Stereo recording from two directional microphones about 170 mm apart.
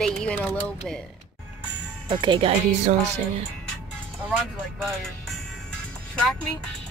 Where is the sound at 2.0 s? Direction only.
25° right (ahead or behind).